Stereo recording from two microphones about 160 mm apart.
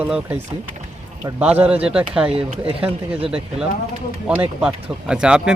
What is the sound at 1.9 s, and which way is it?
Speech, 5° right (ahead or behind).